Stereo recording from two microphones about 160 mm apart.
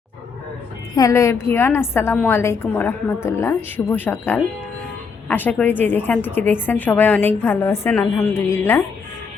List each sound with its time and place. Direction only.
0.9 s a woman's voice: 20° left (ahead or behind)